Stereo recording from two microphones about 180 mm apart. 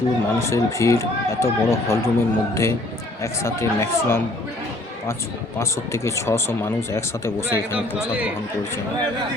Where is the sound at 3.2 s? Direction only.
15° left (ahead or behind).